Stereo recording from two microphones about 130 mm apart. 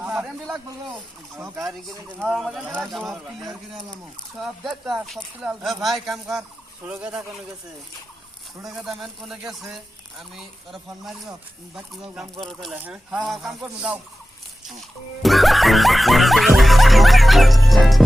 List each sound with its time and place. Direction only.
0.1 s speech: 5° right (ahead or behind)
8.9 s speech: centre (ahead or behind)
12.7 s speech: 10° right (ahead or behind)
13.1 s speech: centre (ahead or behind)